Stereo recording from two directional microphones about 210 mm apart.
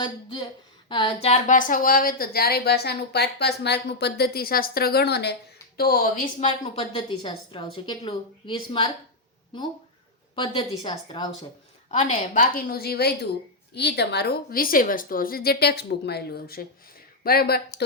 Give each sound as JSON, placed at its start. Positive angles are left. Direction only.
{"t": 0.0, "sound": "a woman's voice", "side_deg": 20}
{"t": 6.7, "sound": "a woman's voice", "side_deg": 20}
{"t": 10.3, "sound": "a woman's voice", "side_deg": 20}
{"t": 11.9, "sound": "a woman's voice", "side_deg": 35}